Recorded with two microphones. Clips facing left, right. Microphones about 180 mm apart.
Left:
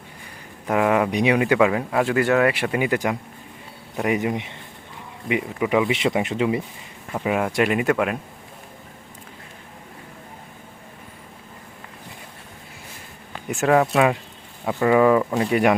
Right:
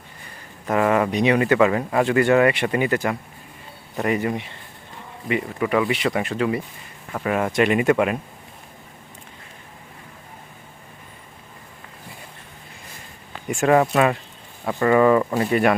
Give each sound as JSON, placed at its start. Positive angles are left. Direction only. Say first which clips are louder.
{"t": 0.7, "sound": "speech", "louder": "even", "side_deg": 5}
{"t": 7.1, "sound": "speech", "louder": "even", "side_deg": 5}
{"t": 13.5, "sound": "speech", "louder": "right 1 dB", "side_deg": 0}